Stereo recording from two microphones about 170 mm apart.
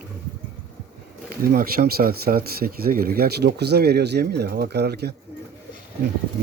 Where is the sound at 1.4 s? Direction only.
60° right (ahead or behind).